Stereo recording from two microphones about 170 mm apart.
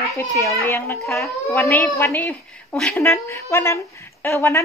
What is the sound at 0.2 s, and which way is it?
Speech, 15° left (ahead or behind).